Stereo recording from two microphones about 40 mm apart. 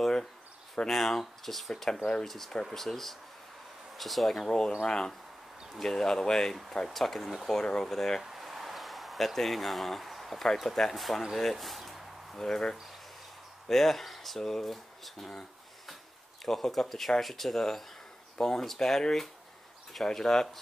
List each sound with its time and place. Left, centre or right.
0.8 s speech: centre
4.5 s speech: centre
8.2 s speech: centre
11.3 s a sound: centre
12.4 s speech: centre
16.4 s speech: centre